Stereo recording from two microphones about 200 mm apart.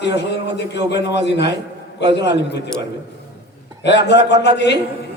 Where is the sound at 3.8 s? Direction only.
60° left (ahead or behind).